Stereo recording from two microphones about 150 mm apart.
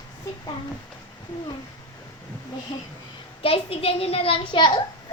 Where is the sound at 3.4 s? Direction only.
40° left (ahead or behind).